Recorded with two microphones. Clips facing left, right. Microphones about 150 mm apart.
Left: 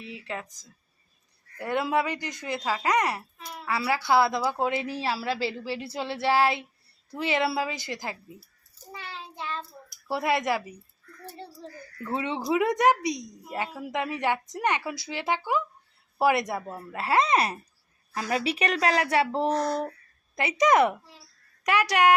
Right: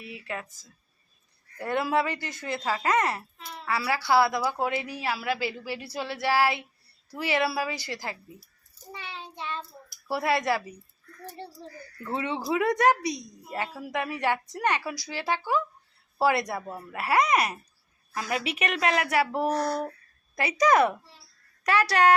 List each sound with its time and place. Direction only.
0.3 s a woman's voice: 15° left (ahead or behind)
8.9 s child singing: centre (ahead or behind)
10.1 s speech: 20° left (ahead or behind)
12.1 s a woman's voice: 20° left (ahead or behind)